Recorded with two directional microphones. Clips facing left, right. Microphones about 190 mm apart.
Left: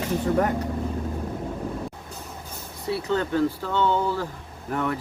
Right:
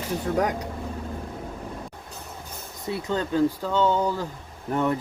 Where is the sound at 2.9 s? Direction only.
15° right (ahead or behind).